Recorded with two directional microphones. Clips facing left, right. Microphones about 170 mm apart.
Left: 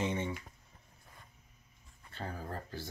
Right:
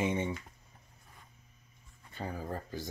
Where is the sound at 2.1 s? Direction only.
15° right (ahead or behind).